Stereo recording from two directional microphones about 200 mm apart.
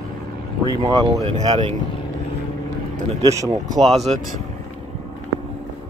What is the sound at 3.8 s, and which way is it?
Speech, 30° right (ahead or behind).